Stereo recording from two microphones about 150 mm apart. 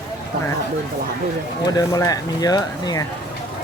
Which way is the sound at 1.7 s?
25° left (ahead or behind).